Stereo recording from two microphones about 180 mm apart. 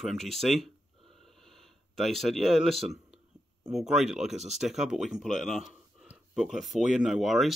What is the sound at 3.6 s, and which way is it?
Speech, 5° right (ahead or behind).